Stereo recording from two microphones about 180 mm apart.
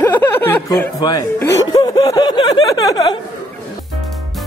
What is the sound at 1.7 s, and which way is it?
Snicker, 25° left (ahead or behind).